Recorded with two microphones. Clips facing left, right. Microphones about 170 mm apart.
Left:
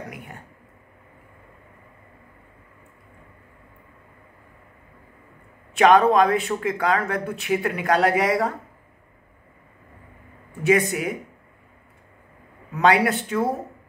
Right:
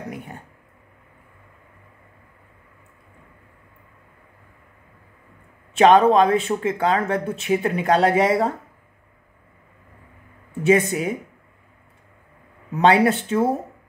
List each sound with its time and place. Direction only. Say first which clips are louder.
5.8 s speech: right 2 dB; 25° right (ahead or behind)
10.6 s speech: right 2 dB; 25° right (ahead or behind)
12.7 s speech: right 3 dB; 25° right (ahead or behind)